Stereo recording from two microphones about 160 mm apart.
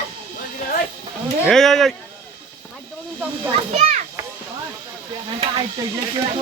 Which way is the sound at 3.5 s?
45° right (ahead or behind).